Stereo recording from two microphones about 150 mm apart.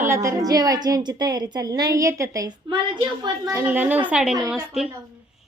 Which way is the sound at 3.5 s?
15° right (ahead or behind).